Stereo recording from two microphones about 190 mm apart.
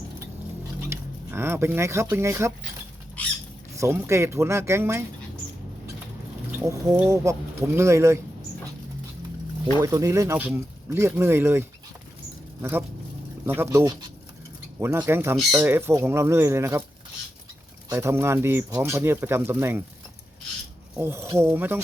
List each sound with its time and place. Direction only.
0.9 s speech: 15° right (ahead or behind)
3.8 s speech: 15° right (ahead or behind)
6.5 s speech: 15° right (ahead or behind)
9.8 s speech: 15° right (ahead or behind)
13.4 s speech: 15° right (ahead or behind)
17.8 s speech: 15° right (ahead or behind)
21.0 s speech: 15° right (ahead or behind)